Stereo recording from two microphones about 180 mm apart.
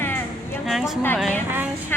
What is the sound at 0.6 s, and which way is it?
Speech, centre (ahead or behind).